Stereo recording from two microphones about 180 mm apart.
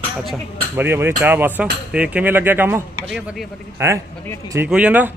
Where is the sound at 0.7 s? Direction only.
10° right (ahead or behind).